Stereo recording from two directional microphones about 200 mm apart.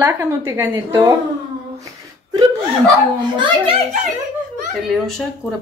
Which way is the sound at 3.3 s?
30° right (ahead or behind).